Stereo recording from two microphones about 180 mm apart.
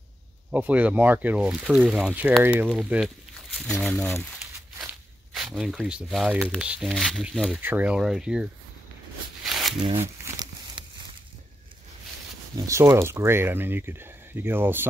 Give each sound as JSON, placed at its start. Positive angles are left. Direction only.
{"t": 0.5, "sound": "speech", "side_deg": -10}
{"t": 9.4, "sound": "a sound", "side_deg": 0}
{"t": 9.8, "sound": "speech", "side_deg": -35}
{"t": 10.2, "sound": "crumpling", "side_deg": -25}
{"t": 12.5, "sound": "speech", "side_deg": -15}